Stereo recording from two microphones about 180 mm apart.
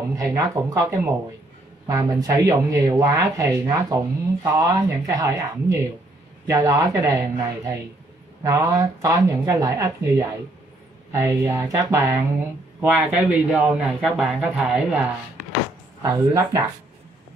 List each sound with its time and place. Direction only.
0.2 s speech: 15° right (ahead or behind)